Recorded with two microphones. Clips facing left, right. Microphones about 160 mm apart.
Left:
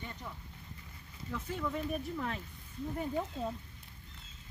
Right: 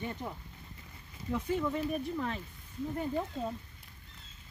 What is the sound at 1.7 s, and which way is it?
Speech, 5° right (ahead or behind).